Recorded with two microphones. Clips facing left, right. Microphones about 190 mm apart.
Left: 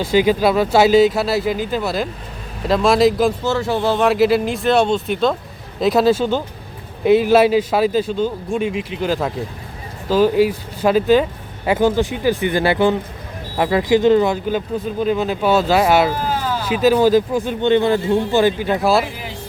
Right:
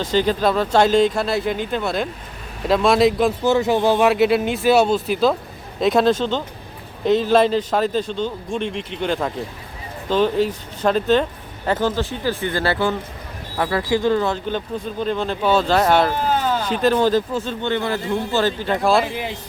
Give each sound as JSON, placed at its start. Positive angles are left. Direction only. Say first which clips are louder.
{"t": 0.0, "sound": "speech", "louder": "left 3 dB", "side_deg": 10}
{"t": 3.4, "sound": "speech", "louder": "right 2 dB", "side_deg": -15}
{"t": 4.0, "sound": "speech", "louder": "left 1 dB", "side_deg": 0}